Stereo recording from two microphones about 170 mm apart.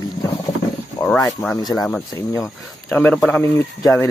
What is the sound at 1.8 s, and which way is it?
Speech, 10° left (ahead or behind).